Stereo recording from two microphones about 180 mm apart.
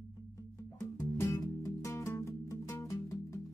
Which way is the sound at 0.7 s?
15° left (ahead or behind).